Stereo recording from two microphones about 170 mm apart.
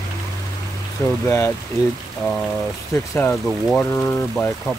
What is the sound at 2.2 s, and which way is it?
Speech, 5° left (ahead or behind).